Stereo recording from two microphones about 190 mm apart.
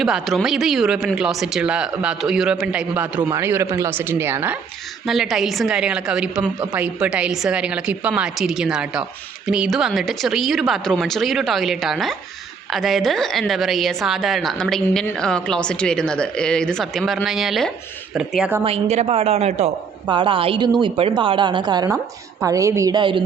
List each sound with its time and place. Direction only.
0.0 s a woman's voice: centre (ahead or behind)
5.0 s a woman's voice: centre (ahead or behind)
18.6 s a woman's voice: 35° right (ahead or behind)